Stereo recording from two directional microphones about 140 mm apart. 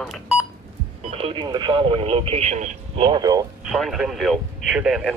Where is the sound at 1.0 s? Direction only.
45° right (ahead or behind).